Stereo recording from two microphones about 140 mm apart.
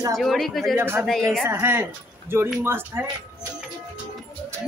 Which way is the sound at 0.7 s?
15° right (ahead or behind).